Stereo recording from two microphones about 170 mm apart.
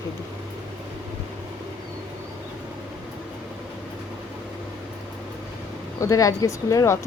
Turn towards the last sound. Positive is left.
turn(degrees=20)  # may be behind; listen again after turning